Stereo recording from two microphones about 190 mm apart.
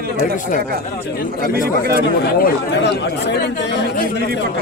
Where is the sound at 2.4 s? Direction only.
65° left (ahead or behind).